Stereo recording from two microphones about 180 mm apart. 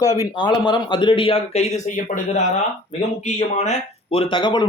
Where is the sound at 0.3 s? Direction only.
25° left (ahead or behind).